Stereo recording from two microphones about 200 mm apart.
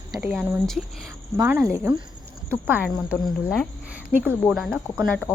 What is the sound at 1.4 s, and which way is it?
Speech, 15° right (ahead or behind).